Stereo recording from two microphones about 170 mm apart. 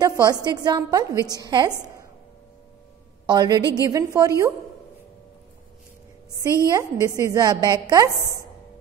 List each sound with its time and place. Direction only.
0.0 s a woman's voice: 20° right (ahead or behind)
3.3 s a woman's voice: 25° right (ahead or behind)
6.7 s a woman's voice: 15° right (ahead or behind)